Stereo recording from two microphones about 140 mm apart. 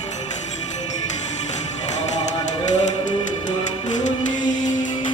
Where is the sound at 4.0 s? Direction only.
60° left (ahead or behind).